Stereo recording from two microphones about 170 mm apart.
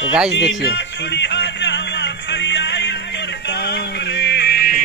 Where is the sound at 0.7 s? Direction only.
90° left.